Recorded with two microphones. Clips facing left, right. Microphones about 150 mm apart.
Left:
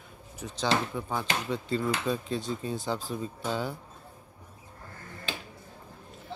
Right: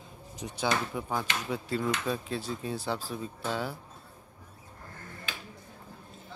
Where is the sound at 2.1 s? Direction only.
5° right (ahead or behind).